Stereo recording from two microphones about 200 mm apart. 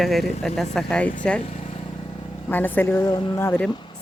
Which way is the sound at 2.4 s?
10° left (ahead or behind).